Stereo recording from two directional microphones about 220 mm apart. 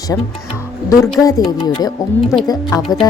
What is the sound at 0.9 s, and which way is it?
Speech, 15° left (ahead or behind).